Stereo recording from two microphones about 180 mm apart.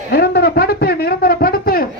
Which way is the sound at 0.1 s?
65° left (ahead or behind).